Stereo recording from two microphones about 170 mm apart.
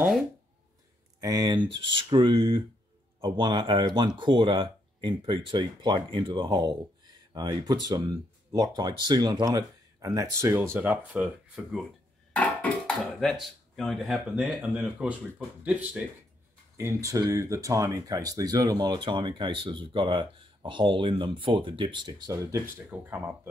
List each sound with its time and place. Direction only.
1.2 s speech: 20° right (ahead or behind); by 11.8 s 5° right (ahead or behind)
12.3 s a sound: 5° left (ahead or behind)
13.9 s speech: centre (ahead or behind)